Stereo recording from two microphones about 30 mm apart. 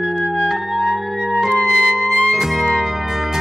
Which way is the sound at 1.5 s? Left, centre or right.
Left.